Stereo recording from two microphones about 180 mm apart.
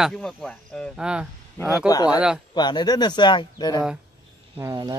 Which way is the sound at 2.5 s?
25° left (ahead or behind).